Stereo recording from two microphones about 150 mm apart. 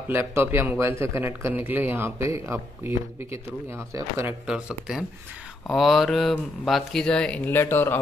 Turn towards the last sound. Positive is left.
turn(degrees=15)  # may be behind; listen again after turning